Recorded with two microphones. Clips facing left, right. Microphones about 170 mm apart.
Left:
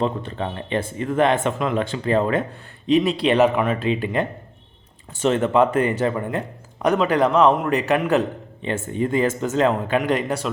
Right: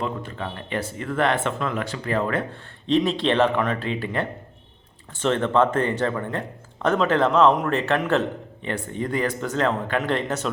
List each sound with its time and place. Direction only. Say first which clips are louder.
0.0 s speech: left 5 dB; 30° left (ahead or behind)
2.8 s speech: left 3 dB; 10° left (ahead or behind)